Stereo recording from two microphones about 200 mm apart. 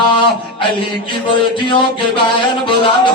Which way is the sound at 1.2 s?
25° left (ahead or behind).